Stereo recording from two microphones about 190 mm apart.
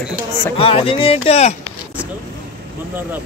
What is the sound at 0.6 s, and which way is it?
Speech, 30° left (ahead or behind).